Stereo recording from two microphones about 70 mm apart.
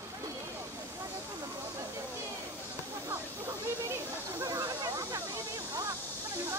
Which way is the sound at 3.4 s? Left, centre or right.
Right.